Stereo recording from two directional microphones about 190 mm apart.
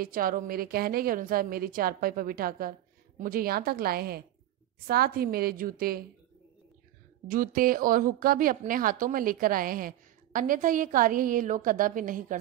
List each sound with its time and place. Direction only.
0.0 s speech: 50° right (ahead or behind)
7.2 s speech: 45° right (ahead or behind)